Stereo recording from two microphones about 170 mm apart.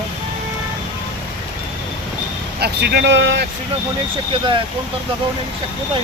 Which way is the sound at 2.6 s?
75° right (ahead or behind).